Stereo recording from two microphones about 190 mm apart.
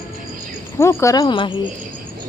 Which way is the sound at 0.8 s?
15° left (ahead or behind).